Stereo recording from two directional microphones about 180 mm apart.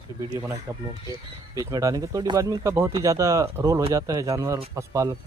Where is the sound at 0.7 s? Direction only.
15° right (ahead or behind).